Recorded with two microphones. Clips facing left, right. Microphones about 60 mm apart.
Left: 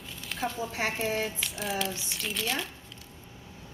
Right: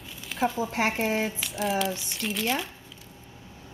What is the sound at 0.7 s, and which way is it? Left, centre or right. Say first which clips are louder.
Speech: right 5 dB; right.